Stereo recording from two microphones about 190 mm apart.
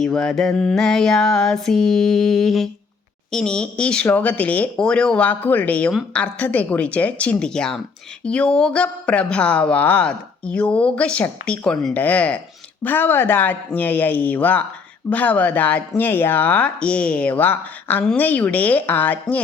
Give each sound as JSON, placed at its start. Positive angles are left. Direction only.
{"t": 0.0, "sound": "speech", "side_deg": 5}